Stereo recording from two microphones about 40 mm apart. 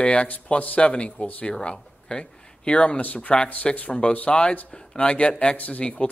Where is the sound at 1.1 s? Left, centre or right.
Left.